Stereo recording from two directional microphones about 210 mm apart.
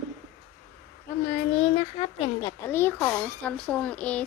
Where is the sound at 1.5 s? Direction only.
25° left (ahead or behind).